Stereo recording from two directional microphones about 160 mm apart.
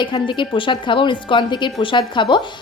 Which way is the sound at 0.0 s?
30° left (ahead or behind).